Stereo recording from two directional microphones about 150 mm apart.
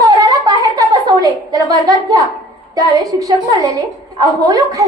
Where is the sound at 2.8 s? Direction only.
25° right (ahead or behind).